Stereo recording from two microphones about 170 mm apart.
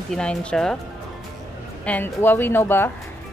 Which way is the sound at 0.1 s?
5° left (ahead or behind).